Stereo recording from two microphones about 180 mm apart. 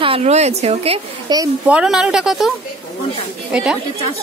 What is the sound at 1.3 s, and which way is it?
Speech, 25° right (ahead or behind).